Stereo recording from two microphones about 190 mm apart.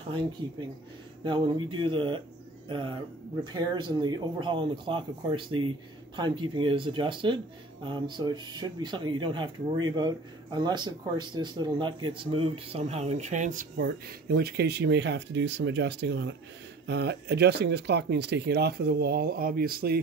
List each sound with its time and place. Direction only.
1.2 s speech: 25° right (ahead or behind); by 13.7 s 40° right (ahead or behind)
14.0 s speech: 55° right (ahead or behind)